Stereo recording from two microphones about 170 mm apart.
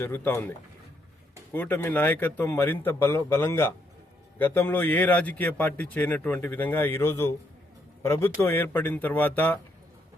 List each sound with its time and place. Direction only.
0.0 s a man's voice: 15° left (ahead or behind)
1.5 s a man's voice: 10° left (ahead or behind)